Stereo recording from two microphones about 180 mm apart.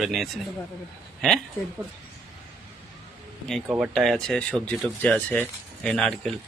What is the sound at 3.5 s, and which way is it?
Speech, centre (ahead or behind).